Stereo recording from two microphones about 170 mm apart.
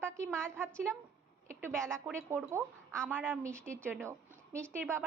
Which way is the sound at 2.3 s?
15° right (ahead or behind).